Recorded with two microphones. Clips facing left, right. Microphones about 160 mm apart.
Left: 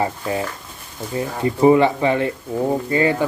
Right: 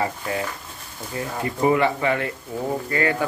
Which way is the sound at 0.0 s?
25° left (ahead or behind).